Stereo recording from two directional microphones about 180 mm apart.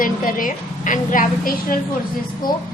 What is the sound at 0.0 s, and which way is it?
A woman's voice, 50° left (ahead or behind).